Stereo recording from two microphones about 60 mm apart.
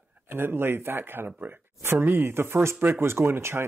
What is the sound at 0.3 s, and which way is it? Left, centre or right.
Speech, right.